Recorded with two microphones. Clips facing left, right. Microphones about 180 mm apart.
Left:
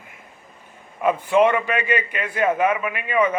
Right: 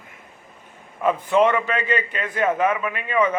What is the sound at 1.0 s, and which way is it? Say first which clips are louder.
A man's voice: left 1 dB; 10° left (ahead or behind).